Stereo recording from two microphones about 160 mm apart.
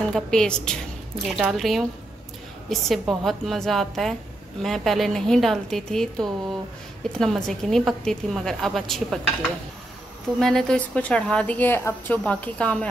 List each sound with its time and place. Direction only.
0.1 s a woman's voice: 5° left (ahead or behind)